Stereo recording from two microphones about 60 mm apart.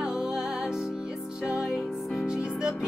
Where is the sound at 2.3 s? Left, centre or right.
Centre.